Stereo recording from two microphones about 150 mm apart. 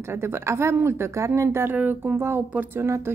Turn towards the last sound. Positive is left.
turn(degrees=-20)  # may be behind; listen again after turning